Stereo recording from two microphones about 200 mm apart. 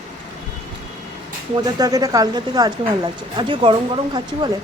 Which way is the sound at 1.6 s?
20° right (ahead or behind).